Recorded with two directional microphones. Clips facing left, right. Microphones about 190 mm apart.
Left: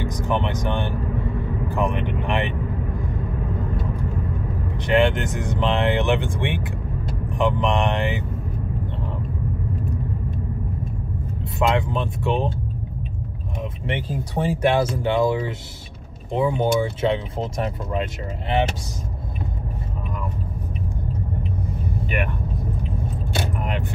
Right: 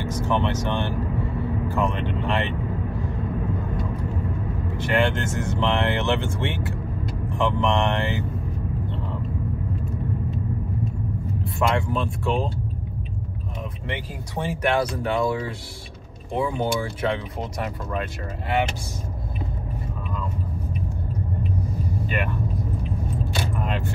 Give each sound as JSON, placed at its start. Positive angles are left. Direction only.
{"t": 0.0, "sound": "speech", "side_deg": 15}
{"t": 4.7, "sound": "speech", "side_deg": 15}
{"t": 11.6, "sound": "speech", "side_deg": 20}
{"t": 13.8, "sound": "speech", "side_deg": 30}